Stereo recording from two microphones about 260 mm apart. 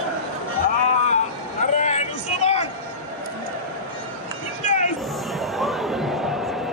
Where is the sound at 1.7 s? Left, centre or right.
Left.